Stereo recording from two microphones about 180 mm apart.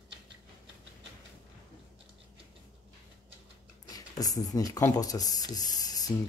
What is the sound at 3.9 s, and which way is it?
Speech, 20° left (ahead or behind).